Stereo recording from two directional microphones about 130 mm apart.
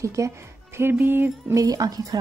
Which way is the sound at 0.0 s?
25° right (ahead or behind).